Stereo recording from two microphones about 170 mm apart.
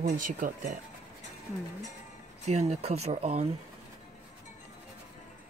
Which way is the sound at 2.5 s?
40° right (ahead or behind).